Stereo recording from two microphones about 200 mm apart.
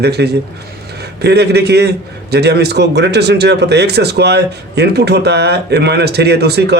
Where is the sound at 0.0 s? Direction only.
55° right (ahead or behind).